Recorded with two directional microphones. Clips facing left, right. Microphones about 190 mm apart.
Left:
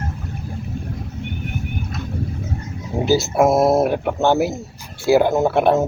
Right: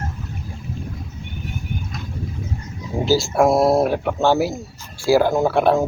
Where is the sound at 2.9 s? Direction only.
5° left (ahead or behind).